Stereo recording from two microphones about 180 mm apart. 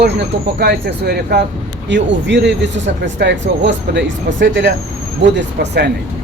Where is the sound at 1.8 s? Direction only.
80° right.